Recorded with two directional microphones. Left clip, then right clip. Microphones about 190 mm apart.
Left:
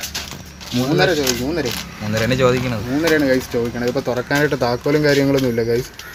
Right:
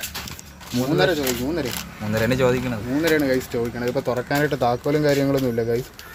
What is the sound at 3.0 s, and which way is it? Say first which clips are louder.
Speech: left 4 dB; centre (ahead or behind).